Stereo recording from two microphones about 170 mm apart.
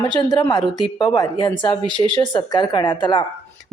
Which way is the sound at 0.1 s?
25° left (ahead or behind).